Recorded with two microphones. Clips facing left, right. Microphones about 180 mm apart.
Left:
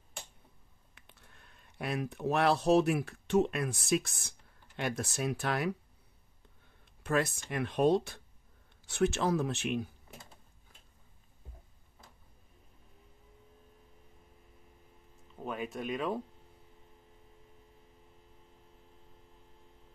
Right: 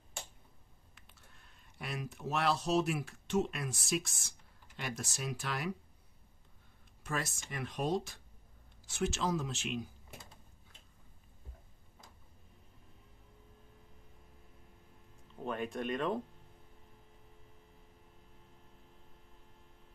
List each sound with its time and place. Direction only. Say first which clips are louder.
0.9 s speech: left 3 dB; 60° left (ahead or behind)
7.0 s speech: left 8 dB; 60° left (ahead or behind)
15.3 s speech: even; 5° left (ahead or behind)